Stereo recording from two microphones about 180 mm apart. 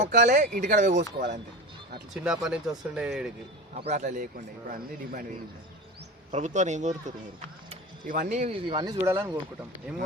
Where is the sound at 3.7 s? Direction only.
40° right (ahead or behind).